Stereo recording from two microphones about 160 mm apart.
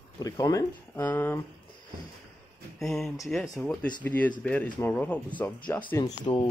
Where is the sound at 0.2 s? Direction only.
25° left (ahead or behind).